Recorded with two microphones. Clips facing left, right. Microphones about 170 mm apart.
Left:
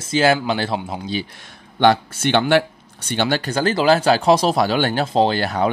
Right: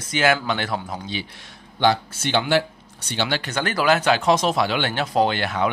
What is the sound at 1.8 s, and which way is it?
A man's voice, 60° left (ahead or behind).